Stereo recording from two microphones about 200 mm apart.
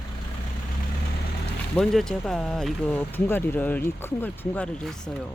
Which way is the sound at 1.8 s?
Centre (ahead or behind).